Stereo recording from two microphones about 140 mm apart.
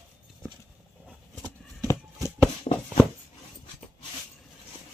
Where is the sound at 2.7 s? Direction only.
55° left (ahead or behind).